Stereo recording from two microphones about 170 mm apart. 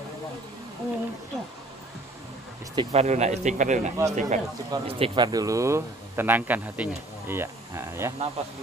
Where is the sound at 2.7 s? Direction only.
35° right (ahead or behind).